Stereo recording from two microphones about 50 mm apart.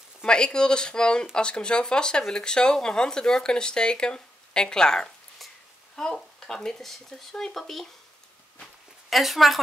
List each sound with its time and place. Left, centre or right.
0.2 s speech: centre
5.4 s a sound: centre
5.9 s speech: centre
9.1 s a woman's voice: centre